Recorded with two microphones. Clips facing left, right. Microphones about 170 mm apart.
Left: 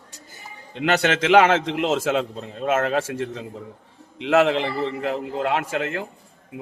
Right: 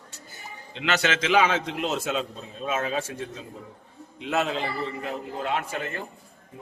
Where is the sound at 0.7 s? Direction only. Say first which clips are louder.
Left 5 dB; 50° left (ahead or behind).